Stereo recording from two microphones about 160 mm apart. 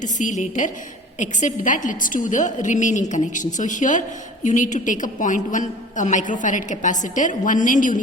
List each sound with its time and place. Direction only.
0.0 s a woman's voice: 50° left (ahead or behind)